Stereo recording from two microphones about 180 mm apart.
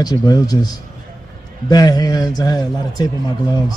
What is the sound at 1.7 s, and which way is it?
A man's voice, 20° left (ahead or behind).